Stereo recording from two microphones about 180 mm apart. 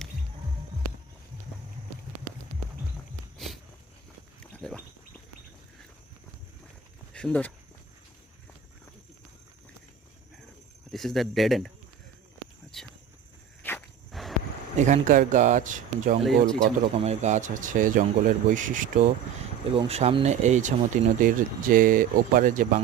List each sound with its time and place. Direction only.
3.3 s a sound: centre (ahead or behind)
7.1 s speech: 5° left (ahead or behind)
10.9 s speech: centre (ahead or behind)
12.7 s a sound: centre (ahead or behind)
13.6 s walk: 10° left (ahead or behind)
14.1 s a sound: centre (ahead or behind)
14.8 s speech: 40° right (ahead or behind)
16.2 s speech: centre (ahead or behind)
17.0 s speech: 40° right (ahead or behind)
19.7 s speech: 35° right (ahead or behind)